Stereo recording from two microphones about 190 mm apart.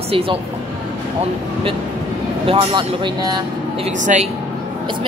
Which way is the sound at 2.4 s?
30° right (ahead or behind).